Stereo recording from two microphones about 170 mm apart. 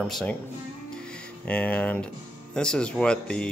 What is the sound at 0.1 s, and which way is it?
Speech, 5° left (ahead or behind).